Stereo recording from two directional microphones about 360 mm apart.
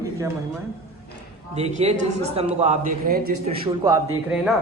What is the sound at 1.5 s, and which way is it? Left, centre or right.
A man's voice, centre.